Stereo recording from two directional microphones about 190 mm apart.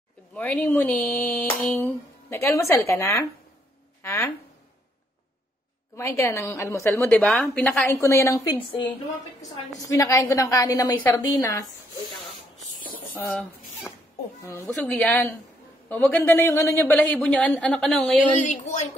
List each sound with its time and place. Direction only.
0.3 s a woman's voice: 5° left (ahead or behind)
5.9 s a woman's voice: 15° left (ahead or behind)
12.5 s snake: 45° left (ahead or behind)
13.3 s a woman's voice: 5° left (ahead or behind)
18.2 s a woman's voice: 40° left (ahead or behind)